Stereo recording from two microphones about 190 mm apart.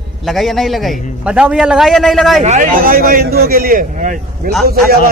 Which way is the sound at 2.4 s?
40° right (ahead or behind).